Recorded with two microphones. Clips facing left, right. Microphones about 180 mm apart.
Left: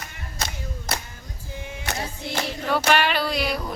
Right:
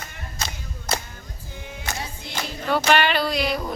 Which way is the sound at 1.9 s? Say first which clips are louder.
Left 2 dB; 65° left (ahead or behind).